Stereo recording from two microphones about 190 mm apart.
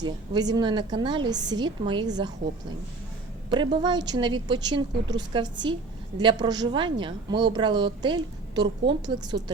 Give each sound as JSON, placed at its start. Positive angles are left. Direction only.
{"t": 0.0, "sound": "a woman's voice", "side_deg": -20}
{"t": 3.5, "sound": "a woman's voice", "side_deg": -25}